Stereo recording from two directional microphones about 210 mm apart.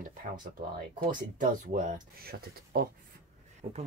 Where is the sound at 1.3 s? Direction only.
40° right (ahead or behind).